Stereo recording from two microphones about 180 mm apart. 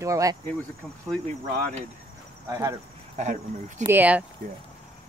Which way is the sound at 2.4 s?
15° right (ahead or behind).